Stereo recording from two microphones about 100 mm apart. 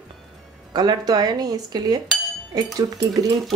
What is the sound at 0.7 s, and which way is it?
Speech, 45° right (ahead or behind).